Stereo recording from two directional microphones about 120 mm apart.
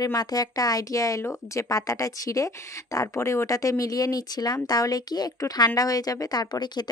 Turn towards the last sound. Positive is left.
turn(degrees=35)  # may be behind; listen again after turning